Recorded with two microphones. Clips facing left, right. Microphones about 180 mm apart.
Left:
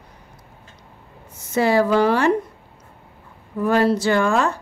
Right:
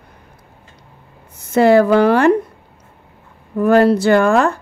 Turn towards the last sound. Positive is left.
turn(degrees=-60)  # may be behind; listen again after turning